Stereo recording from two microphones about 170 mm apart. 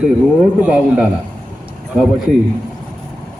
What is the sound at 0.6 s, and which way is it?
Speech, 5° right (ahead or behind).